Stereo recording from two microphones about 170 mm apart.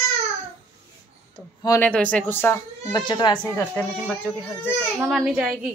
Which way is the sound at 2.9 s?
25° left (ahead or behind).